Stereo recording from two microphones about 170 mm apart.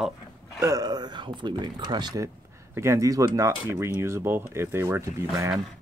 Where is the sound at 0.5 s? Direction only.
20° right (ahead or behind).